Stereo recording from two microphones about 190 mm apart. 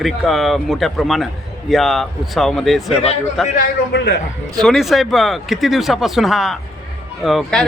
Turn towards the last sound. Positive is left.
turn(degrees=0)  # may be behind; listen again after turning